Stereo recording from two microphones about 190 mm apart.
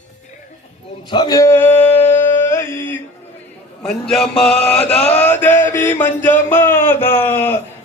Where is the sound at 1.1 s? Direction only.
20° left (ahead or behind).